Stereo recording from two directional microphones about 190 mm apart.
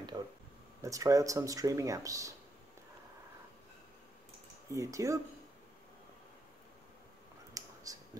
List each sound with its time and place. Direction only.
0.1 s a sound: 25° right (ahead or behind)
0.8 s speech: 15° right (ahead or behind)
4.6 s speech: 15° right (ahead or behind)
7.5 s clicking: 20° right (ahead or behind)